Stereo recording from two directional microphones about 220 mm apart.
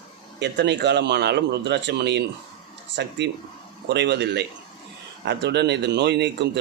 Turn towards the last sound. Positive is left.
turn(degrees=-50)  # may be behind; listen again after turning